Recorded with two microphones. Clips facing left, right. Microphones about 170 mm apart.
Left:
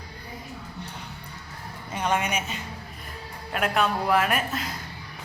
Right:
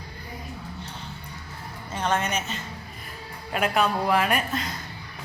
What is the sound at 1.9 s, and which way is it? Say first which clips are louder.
Speech: even; 10° left (ahead or behind).